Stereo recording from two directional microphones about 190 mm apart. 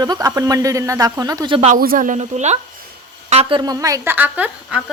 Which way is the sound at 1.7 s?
45° right (ahead or behind).